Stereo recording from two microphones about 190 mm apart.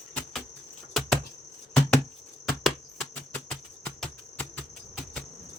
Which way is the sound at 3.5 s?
5° left (ahead or behind).